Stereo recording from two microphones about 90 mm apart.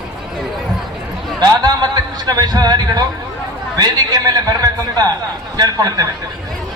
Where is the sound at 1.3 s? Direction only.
50° right (ahead or behind).